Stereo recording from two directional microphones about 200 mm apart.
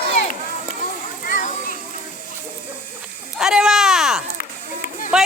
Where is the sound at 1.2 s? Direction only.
40° left (ahead or behind).